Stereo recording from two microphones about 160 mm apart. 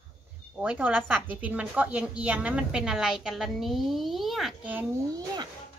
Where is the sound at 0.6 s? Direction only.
10° right (ahead or behind).